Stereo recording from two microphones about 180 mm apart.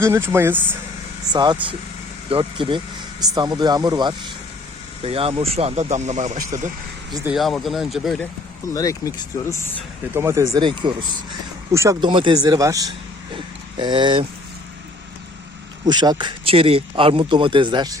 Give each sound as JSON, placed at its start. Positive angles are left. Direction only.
{"t": 0.0, "sound": "speech", "side_deg": -15}
{"t": 1.3, "sound": "speech", "side_deg": -25}
{"t": 7.3, "sound": "speech", "side_deg": 0}
{"t": 8.7, "sound": "speech", "side_deg": 20}
{"t": 10.2, "sound": "speech", "side_deg": -15}
{"t": 10.6, "sound": "speech", "side_deg": -25}
{"t": 11.7, "sound": "speech", "side_deg": -15}
{"t": 15.9, "sound": "speech", "side_deg": -25}